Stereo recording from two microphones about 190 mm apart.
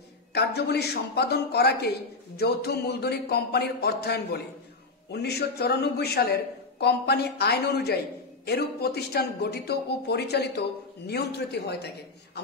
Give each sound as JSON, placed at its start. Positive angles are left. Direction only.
{"t": 0.3, "sound": "a woman's voice", "side_deg": 60}